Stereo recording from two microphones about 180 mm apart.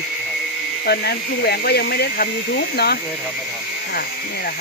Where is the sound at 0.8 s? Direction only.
60° left (ahead or behind).